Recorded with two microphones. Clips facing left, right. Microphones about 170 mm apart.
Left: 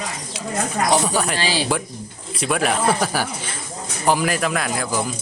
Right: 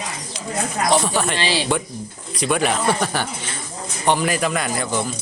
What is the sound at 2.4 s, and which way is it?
Speech, centre (ahead or behind).